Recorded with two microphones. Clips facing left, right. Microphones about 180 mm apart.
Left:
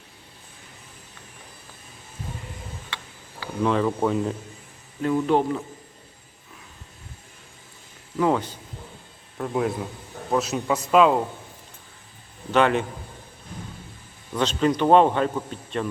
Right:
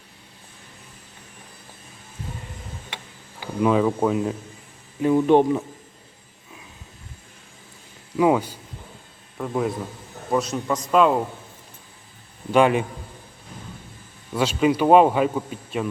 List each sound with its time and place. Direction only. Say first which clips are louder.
3.4 s speech: right 3 dB; 10° right (ahead or behind)
5.0 s speech: right 5 dB; 20° right (ahead or behind)
8.1 s speech: right 3 dB; 10° right (ahead or behind)
9.4 s speech: even; centre (ahead or behind)
12.5 s speech: right 2 dB; 10° right (ahead or behind)
14.3 s speech: right 2 dB; 10° right (ahead or behind)